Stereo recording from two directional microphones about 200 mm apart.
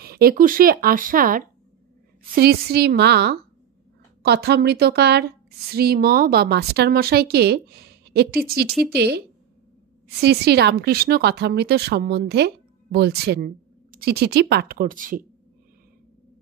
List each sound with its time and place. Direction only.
0.0 s a woman's voice: 50° right (ahead or behind)
10.2 s a woman's voice: 55° right (ahead or behind)